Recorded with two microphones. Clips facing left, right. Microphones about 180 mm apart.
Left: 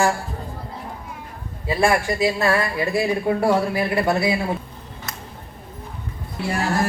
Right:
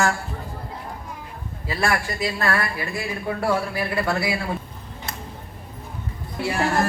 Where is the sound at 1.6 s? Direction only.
20° left (ahead or behind).